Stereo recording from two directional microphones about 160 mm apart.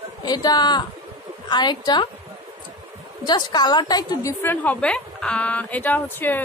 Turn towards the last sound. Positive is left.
turn(degrees=10)  # may be behind; listen again after turning